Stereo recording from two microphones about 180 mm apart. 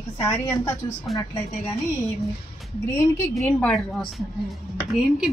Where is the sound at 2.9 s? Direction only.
15° left (ahead or behind).